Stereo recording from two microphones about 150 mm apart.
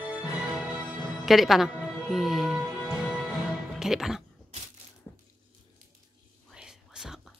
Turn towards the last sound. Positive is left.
turn(degrees=-5)  # may be behind; listen again after turning